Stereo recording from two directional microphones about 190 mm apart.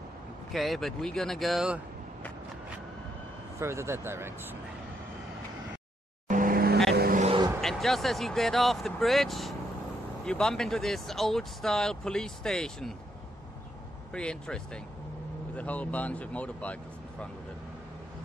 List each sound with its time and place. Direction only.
0.5 s speech: centre (ahead or behind)
3.5 s speech: 15° right (ahead or behind)
6.2 s vehicle: 45° right (ahead or behind)
7.2 s vehicle: 30° right (ahead or behind)
7.6 s speech: centre (ahead or behind)
14.1 s speech: 5° left (ahead or behind)